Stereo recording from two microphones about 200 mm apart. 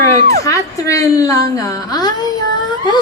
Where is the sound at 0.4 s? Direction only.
15° left (ahead or behind).